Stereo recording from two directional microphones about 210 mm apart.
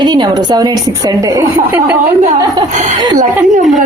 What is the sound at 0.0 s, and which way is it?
Speech, 20° right (ahead or behind).